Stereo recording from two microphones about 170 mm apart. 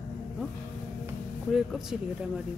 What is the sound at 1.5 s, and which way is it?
Speech, centre (ahead or behind).